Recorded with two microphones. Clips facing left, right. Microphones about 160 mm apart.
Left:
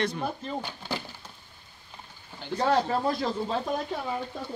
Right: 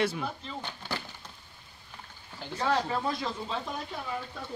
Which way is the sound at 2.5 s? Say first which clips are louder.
Left 4 dB; 35° left (ahead or behind).